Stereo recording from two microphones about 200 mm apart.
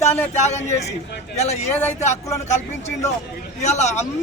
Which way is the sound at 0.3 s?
35° left (ahead or behind).